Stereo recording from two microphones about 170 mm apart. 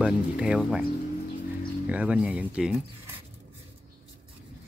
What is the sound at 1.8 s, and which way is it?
Speech, 10° right (ahead or behind).